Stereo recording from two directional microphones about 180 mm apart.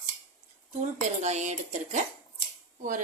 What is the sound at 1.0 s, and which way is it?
Speech, 40° right (ahead or behind).